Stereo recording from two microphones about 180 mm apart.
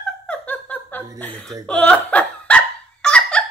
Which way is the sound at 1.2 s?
5° left (ahead or behind).